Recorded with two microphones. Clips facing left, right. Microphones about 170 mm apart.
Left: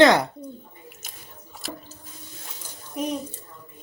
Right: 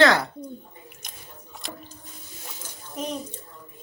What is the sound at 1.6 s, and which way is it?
Water, 5° left (ahead or behind).